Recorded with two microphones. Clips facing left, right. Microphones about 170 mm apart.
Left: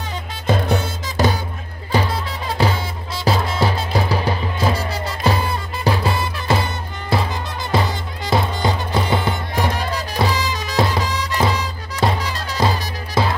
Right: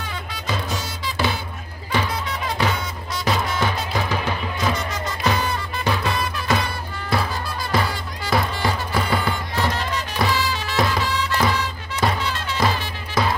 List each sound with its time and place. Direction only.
0.5 s music: 55° left (ahead or behind)
1.9 s music: 30° left (ahead or behind)
9.8 s music: 35° left (ahead or behind)
10.3 s music: 15° left (ahead or behind)
12.2 s music: 40° left (ahead or behind)